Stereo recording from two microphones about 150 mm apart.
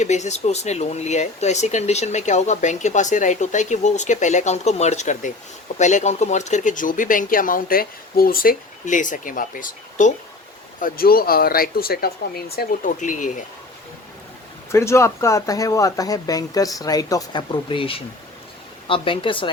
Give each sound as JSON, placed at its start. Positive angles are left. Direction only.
{"t": 0.0, "sound": "speech", "side_deg": 50}
{"t": 13.0, "sound": "speech", "side_deg": 60}
{"t": 14.7, "sound": "speech", "side_deg": 20}